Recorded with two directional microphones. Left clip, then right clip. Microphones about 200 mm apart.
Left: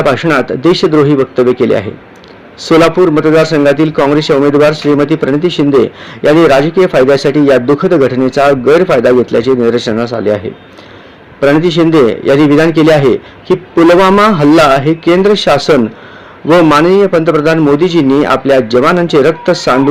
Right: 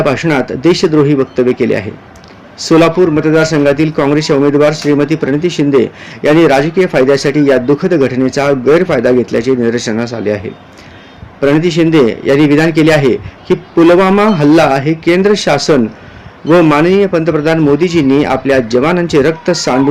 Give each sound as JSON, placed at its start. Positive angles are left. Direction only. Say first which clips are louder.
{"t": 0.0, "sound": "a man's voice", "louder": "left 2 dB", "side_deg": -5}
{"t": 3.2, "sound": "a man's voice", "louder": "left 2 dB", "side_deg": -10}
{"t": 11.5, "sound": "a man's voice", "louder": "left 1 dB", "side_deg": -5}